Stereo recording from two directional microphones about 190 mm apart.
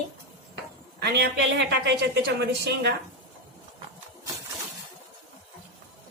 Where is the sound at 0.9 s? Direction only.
60° right (ahead or behind).